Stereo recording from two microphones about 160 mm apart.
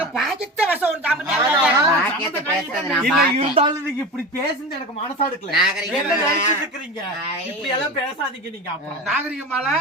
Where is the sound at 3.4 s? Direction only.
35° right (ahead or behind).